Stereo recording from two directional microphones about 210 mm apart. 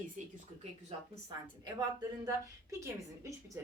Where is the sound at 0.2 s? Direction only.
35° right (ahead or behind).